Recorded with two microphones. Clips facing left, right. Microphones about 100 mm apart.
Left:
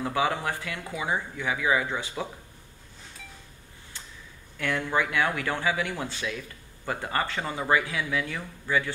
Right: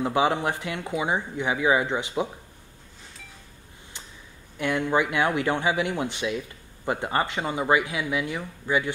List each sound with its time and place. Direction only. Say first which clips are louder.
0.0 s speech: right 4 dB; 20° right (ahead or behind)
4.6 s speech: right 3 dB; 20° right (ahead or behind)